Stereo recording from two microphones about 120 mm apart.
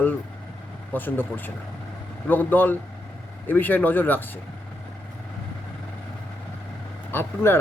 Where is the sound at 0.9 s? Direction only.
15° left (ahead or behind).